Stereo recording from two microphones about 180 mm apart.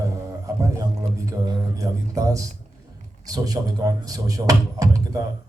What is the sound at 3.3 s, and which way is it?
A man's voice, 20° right (ahead or behind).